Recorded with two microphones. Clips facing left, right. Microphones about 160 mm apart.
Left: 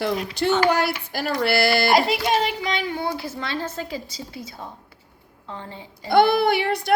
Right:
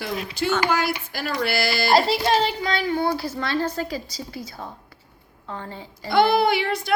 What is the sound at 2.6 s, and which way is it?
A woman's voice, 20° left (ahead or behind).